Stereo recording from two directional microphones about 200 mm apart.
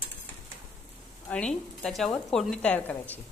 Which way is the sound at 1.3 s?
5° left (ahead or behind).